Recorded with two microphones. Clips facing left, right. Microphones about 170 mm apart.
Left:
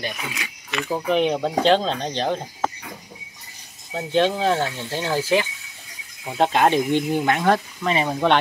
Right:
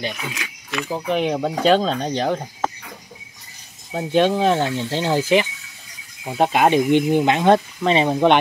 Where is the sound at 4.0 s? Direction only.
15° right (ahead or behind).